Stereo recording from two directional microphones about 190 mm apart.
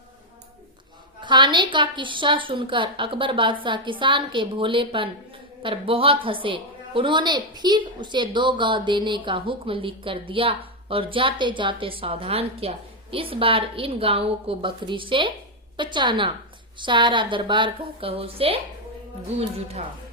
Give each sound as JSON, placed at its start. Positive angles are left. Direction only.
{"t": 1.2, "sound": "a woman's voice", "side_deg": -25}